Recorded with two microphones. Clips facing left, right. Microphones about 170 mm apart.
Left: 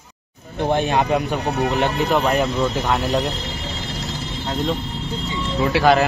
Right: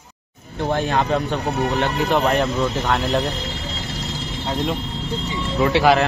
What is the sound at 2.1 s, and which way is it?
A man's voice, centre (ahead or behind).